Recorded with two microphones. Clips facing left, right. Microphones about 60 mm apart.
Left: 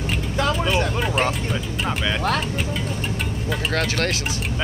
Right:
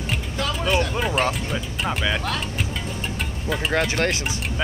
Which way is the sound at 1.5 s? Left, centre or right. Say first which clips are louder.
Left 1 dB; centre.